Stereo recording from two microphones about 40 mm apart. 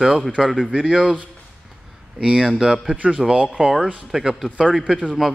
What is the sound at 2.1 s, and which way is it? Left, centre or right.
Speech, centre.